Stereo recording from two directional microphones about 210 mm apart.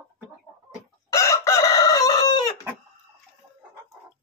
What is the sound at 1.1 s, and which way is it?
Chicken, 15° left (ahead or behind).